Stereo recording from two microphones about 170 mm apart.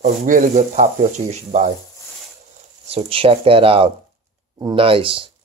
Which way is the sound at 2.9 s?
35° right (ahead or behind).